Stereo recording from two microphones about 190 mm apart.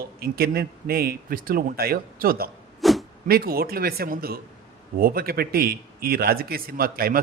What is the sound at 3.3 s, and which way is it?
A man's voice, 55° right (ahead or behind).